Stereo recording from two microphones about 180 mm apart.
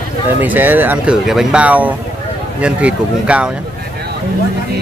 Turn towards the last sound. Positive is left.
turn(degrees=-5)  # may be behind; listen again after turning